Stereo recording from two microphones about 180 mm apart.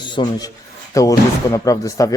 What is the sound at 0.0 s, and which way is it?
A man's voice, 25° left (ahead or behind).